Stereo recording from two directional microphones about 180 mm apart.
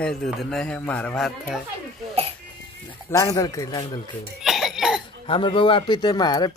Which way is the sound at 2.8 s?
20° left (ahead or behind).